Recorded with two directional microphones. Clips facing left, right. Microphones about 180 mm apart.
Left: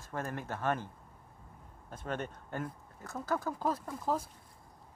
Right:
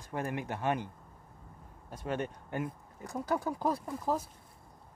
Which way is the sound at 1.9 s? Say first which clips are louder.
Right 3 dB; 10° right (ahead or behind).